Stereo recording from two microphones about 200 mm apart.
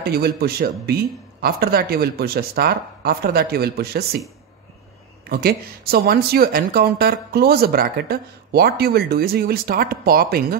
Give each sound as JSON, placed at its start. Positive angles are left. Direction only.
{"t": 0.0, "sound": "speech", "side_deg": -50}
{"t": 5.3, "sound": "speech", "side_deg": -50}